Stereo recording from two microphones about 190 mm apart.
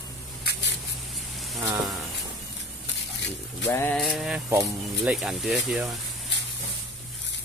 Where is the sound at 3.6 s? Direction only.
10° left (ahead or behind).